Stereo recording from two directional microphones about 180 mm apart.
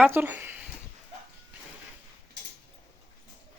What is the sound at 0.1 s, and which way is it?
Speech, 10° right (ahead or behind).